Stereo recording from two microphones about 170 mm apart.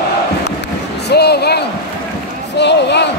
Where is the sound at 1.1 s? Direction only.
75° left (ahead or behind).